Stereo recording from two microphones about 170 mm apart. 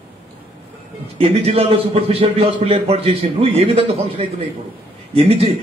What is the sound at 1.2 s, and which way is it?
A man's voice, 35° right (ahead or behind).